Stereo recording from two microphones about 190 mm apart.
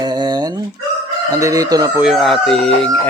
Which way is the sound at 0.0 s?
20° right (ahead or behind).